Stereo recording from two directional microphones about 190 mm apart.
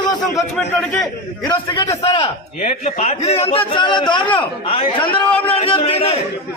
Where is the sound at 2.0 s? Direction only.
30° left (ahead or behind).